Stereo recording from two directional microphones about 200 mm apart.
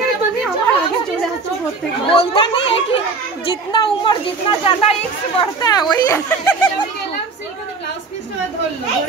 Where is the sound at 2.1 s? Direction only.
25° left (ahead or behind).